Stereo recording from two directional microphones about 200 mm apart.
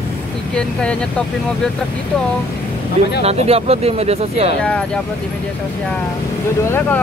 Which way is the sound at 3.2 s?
30° right (ahead or behind).